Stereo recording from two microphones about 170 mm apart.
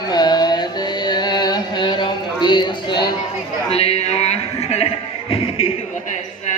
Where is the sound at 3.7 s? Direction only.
35° left (ahead or behind).